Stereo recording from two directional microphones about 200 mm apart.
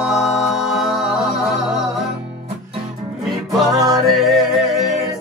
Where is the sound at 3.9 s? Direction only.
Centre (ahead or behind).